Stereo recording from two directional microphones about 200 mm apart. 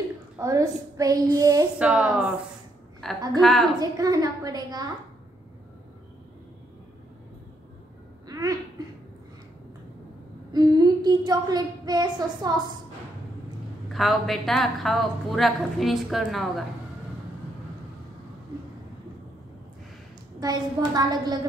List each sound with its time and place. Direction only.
0.4 s a woman's voice: 15° right (ahead or behind)
1.8 s a woman's voice: 5° right (ahead or behind)
3.8 s a woman's voice: 20° right (ahead or behind)
8.3 s hiccup: 20° right (ahead or behind)
10.5 s speech: 20° right (ahead or behind)
13.9 s a woman's voice: centre (ahead or behind)
20.3 s a woman's voice: 20° right (ahead or behind)